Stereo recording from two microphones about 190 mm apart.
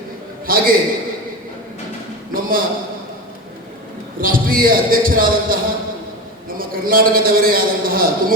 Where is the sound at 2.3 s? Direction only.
50° right (ahead or behind).